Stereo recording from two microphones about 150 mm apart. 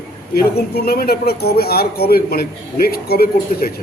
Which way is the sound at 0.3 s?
90° left.